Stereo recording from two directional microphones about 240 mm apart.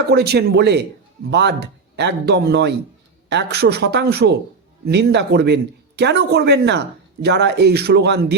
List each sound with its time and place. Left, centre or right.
0.1 s speech: right